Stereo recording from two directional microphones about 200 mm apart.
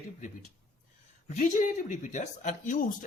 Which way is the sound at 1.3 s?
40° left (ahead or behind).